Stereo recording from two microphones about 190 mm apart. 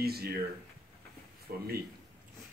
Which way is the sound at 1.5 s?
50° right (ahead or behind).